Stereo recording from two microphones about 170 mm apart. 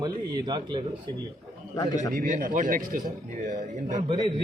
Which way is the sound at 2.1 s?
55° right (ahead or behind).